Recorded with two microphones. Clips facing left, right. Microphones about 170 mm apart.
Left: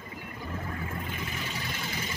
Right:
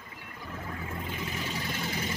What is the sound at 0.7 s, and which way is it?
Vehicle, 20° right (ahead or behind).